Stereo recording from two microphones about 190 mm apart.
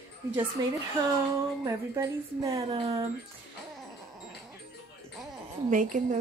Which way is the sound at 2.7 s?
30° right (ahead or behind).